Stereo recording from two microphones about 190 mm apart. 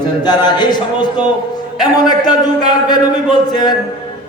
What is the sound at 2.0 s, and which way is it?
A man's voice, 20° left (ahead or behind).